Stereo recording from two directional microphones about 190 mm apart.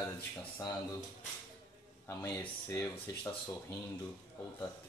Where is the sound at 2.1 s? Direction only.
15° left (ahead or behind).